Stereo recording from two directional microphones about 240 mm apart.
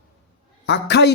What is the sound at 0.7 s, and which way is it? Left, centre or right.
Speech, left.